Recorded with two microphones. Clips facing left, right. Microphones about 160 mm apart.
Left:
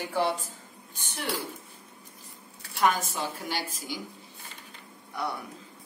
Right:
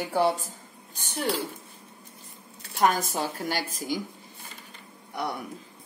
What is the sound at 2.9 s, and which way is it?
A woman's voice, 40° right (ahead or behind).